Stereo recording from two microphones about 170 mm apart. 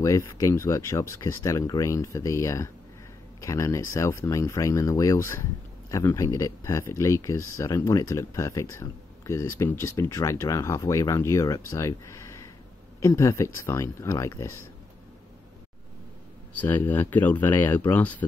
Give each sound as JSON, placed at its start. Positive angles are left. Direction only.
{"t": 0.0, "sound": "speech", "side_deg": 20}
{"t": 16.6, "sound": "speech", "side_deg": 15}